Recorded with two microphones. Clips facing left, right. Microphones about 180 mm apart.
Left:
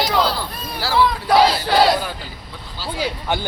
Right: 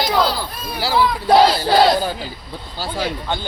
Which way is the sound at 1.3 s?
35° right (ahead or behind).